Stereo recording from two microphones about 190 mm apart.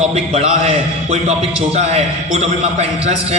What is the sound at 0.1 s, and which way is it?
A man's voice, 30° right (ahead or behind).